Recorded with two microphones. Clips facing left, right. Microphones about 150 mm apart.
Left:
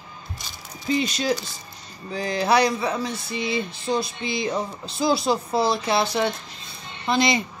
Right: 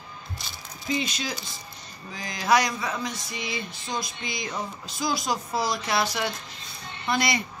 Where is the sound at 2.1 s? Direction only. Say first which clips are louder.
Left 3 dB; 30° left (ahead or behind).